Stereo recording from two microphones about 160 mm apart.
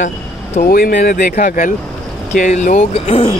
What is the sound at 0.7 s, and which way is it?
Speech, 65° left (ahead or behind).